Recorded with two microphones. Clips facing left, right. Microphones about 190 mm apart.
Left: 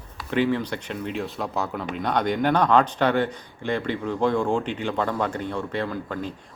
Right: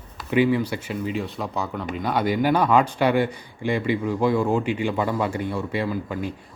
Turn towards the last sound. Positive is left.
turn(degrees=-10)  # may be behind; listen again after turning